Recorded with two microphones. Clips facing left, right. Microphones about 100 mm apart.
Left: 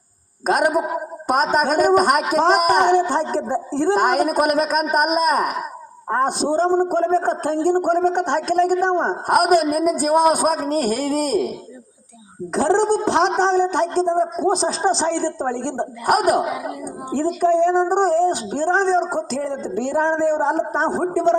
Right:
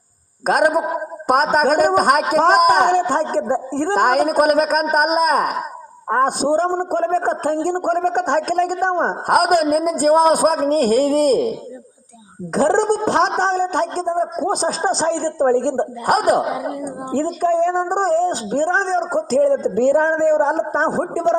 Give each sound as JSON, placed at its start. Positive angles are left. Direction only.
{"t": 0.4, "sound": "a man's voice", "side_deg": -50}
{"t": 1.8, "sound": "a man's voice", "side_deg": -5}
{"t": 2.1, "sound": "a man's voice", "side_deg": -50}
{"t": 6.1, "sound": "a man's voice", "side_deg": -5}
{"t": 6.9, "sound": "a man's voice", "side_deg": -50}
{"t": 12.6, "sound": "a child's voice", "side_deg": -40}